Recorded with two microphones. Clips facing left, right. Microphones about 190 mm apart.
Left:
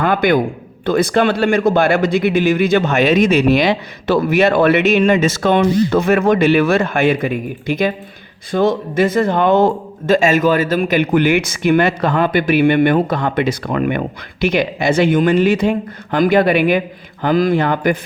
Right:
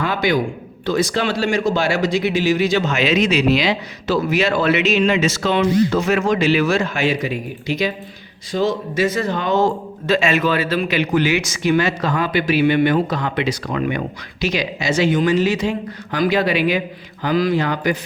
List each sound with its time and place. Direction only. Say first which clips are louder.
0.0 s a man's voice: left 5 dB; 55° left (ahead or behind)